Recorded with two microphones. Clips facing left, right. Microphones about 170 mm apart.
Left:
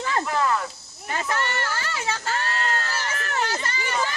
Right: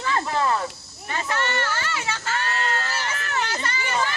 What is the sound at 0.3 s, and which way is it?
Cricket, 30° right (ahead or behind).